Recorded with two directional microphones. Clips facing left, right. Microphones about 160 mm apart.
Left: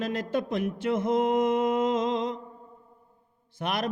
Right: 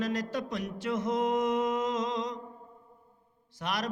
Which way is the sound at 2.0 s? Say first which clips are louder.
Left 5 dB; 25° left (ahead or behind).